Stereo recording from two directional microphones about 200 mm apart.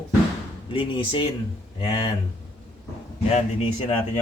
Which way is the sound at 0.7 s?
25° left (ahead or behind).